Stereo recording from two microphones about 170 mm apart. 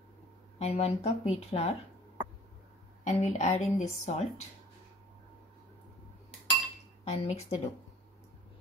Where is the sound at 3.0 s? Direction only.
45° left (ahead or behind).